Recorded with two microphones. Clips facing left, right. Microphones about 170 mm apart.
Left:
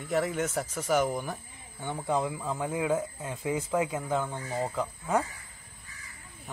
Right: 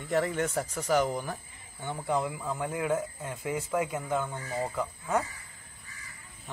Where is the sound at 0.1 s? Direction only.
Centre (ahead or behind); by 5.2 s 20° left (ahead or behind).